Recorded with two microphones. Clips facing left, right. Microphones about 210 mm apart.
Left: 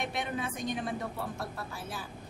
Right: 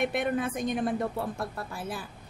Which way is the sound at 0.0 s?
50° right (ahead or behind).